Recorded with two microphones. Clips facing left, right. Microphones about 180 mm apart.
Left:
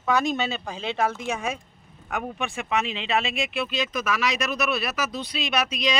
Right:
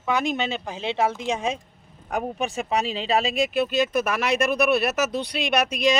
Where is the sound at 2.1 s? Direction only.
35° right (ahead or behind).